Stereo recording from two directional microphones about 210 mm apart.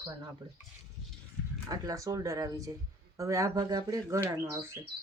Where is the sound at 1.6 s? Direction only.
15° right (ahead or behind).